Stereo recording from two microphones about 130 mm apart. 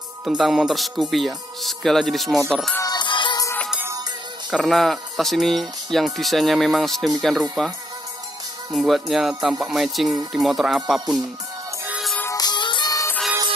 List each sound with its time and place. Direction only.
0.2 s speech: 5° right (ahead or behind)
2.8 s music: 35° left (ahead or behind)
4.5 s speech: centre (ahead or behind)
8.7 s speech: centre (ahead or behind)
12.4 s music: 35° left (ahead or behind)